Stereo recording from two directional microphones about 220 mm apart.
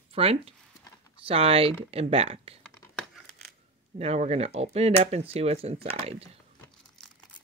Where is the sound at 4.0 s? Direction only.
30° right (ahead or behind).